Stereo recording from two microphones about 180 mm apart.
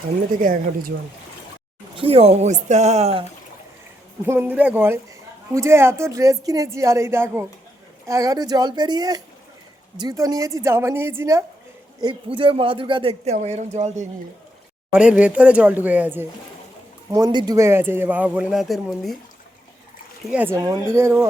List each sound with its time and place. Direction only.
0.4 s speech: 55° right (ahead or behind)
2.0 s speech: 30° right (ahead or behind)
4.3 s a man's voice: 10° right (ahead or behind)
12.4 s speech: 30° right (ahead or behind)
14.9 s a man's voice: 5° right (ahead or behind)
20.3 s a man's voice: 10° right (ahead or behind)